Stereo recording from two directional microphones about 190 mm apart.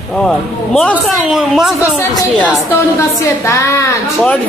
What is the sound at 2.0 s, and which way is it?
A man's voice, 10° left (ahead or behind).